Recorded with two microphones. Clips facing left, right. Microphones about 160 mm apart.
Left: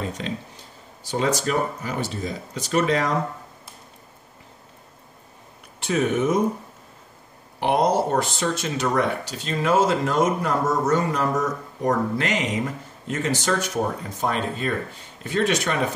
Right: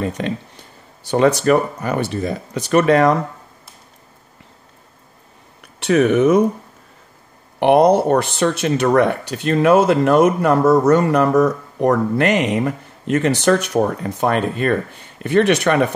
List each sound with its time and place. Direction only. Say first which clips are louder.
0.0 s speech: right 7 dB; 60° right (ahead or behind)
5.8 s speech: right 8 dB; 70° right (ahead or behind)
7.6 s speech: right 8 dB; 65° right (ahead or behind)